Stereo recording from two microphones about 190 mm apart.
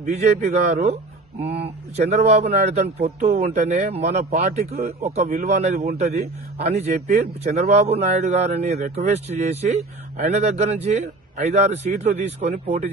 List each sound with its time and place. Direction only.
0.1 s a man's voice: 35° right (ahead or behind)